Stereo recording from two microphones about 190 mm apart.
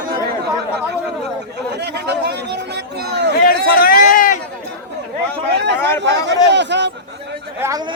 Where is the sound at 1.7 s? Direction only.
60° right (ahead or behind).